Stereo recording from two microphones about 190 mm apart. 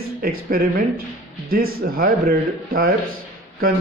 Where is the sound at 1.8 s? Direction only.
50° right (ahead or behind).